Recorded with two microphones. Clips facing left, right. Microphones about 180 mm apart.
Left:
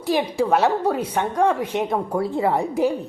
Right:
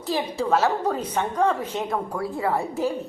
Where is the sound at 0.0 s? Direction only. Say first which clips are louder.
Left 5 dB; 10° left (ahead or behind).